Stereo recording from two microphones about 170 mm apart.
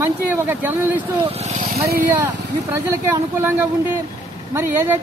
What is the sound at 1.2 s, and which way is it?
Speech, 35° right (ahead or behind).